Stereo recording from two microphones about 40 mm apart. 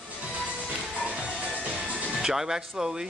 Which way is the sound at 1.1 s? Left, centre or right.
Right.